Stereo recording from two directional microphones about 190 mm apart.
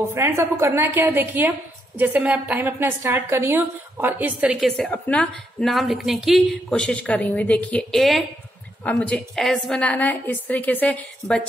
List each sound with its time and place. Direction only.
0.1 s a woman's voice: 15° right (ahead or behind); by 11.4 s 5° left (ahead or behind)